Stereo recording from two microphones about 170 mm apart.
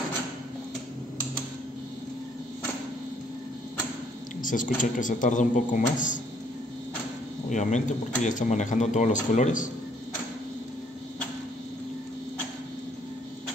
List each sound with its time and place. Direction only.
4.4 s speech: 50° left (ahead or behind)
7.4 s speech: 45° left (ahead or behind)